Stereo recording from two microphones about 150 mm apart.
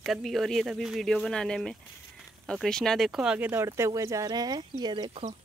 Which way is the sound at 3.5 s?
20° right (ahead or behind).